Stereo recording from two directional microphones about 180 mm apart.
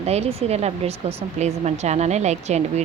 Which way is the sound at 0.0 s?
35° right (ahead or behind).